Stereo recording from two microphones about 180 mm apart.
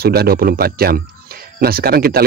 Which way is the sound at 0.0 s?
60° right (ahead or behind).